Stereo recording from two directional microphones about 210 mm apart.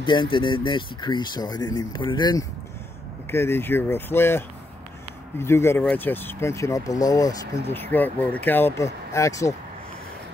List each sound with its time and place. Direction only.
0.0 s speech: 25° left (ahead or behind)